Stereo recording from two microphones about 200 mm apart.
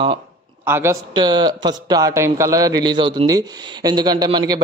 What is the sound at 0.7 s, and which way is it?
A man's voice, 10° right (ahead or behind).